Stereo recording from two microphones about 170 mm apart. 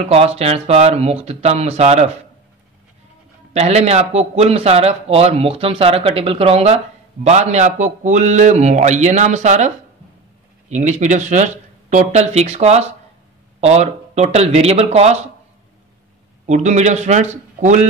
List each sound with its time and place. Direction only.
0.0 s a man's voice: 35° right (ahead or behind)
3.5 s a man's voice: 40° right (ahead or behind)
10.7 s a man's voice: 45° right (ahead or behind)
16.4 s a man's voice: 45° right (ahead or behind)